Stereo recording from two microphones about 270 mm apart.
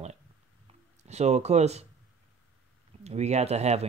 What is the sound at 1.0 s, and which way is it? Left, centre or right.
Speech, right.